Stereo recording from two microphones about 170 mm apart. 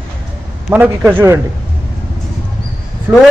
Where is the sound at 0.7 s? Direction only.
10° right (ahead or behind).